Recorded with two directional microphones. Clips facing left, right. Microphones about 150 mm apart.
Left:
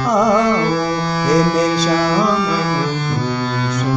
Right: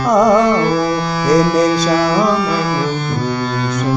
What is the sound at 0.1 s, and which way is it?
Music, 45° right (ahead or behind).